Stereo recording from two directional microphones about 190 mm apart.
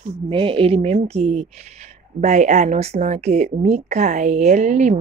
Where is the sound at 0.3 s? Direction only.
30° right (ahead or behind).